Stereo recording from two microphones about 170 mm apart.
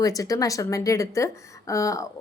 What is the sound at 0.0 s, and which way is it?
A woman's voice, 20° left (ahead or behind).